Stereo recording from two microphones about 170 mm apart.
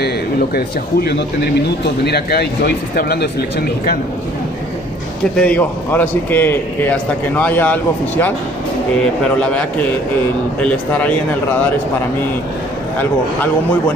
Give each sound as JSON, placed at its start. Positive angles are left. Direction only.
{"t": 0.6, "sound": "speech", "side_deg": 70}
{"t": 5.4, "sound": "a man's voice", "side_deg": 10}
{"t": 9.4, "sound": "a man's voice", "side_deg": 5}